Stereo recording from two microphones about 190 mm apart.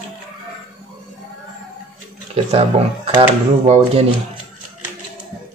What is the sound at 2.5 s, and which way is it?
Speech, 30° right (ahead or behind).